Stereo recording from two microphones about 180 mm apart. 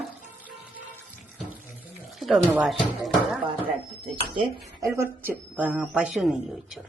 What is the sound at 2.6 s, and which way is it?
Speech, centre (ahead or behind).